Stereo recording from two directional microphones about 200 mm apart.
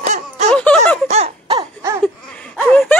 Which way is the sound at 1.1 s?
30° right (ahead or behind).